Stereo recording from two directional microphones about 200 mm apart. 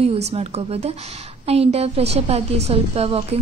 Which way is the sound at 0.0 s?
30° right (ahead or behind).